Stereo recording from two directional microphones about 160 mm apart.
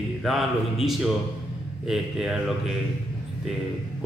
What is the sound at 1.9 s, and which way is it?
Speech, 5° right (ahead or behind).